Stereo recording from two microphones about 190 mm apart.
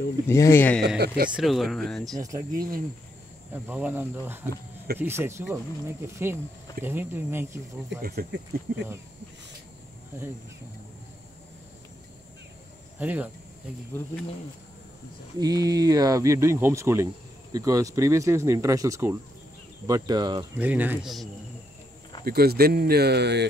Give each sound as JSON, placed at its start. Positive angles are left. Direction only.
{"t": 0.3, "sound": "speech", "side_deg": 15}
{"t": 0.8, "sound": "speech", "side_deg": -60}
{"t": 1.3, "sound": "speech", "side_deg": 0}
{"t": 2.1, "sound": "speech", "side_deg": -15}
{"t": 2.5, "sound": "speech", "side_deg": -50}
{"t": 3.5, "sound": "speech", "side_deg": -10}
{"t": 8.0, "sound": "speech", "side_deg": -55}
{"t": 13.0, "sound": "speech", "side_deg": -10}
{"t": 15.3, "sound": "speech", "side_deg": -20}
{"t": 20.5, "sound": "speech", "side_deg": -10}
{"t": 22.2, "sound": "speech", "side_deg": -55}